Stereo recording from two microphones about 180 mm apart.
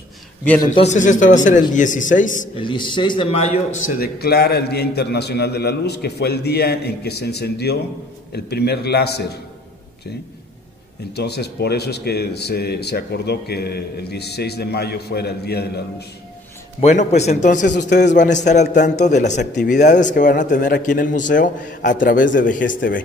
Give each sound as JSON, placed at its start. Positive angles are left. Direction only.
{"t": 0.7, "sound": "a man's voice", "side_deg": 40}
{"t": 2.5, "sound": "a man's voice", "side_deg": 25}
{"t": 4.0, "sound": "speech", "side_deg": 60}
{"t": 11.1, "sound": "speech", "side_deg": 65}
{"t": 16.8, "sound": "a man's voice", "side_deg": 40}
{"t": 17.8, "sound": "a man's voice", "side_deg": 70}
{"t": 18.1, "sound": "a man's voice", "side_deg": 45}